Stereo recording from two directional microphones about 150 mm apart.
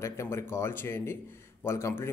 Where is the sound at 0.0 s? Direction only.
20° left (ahead or behind).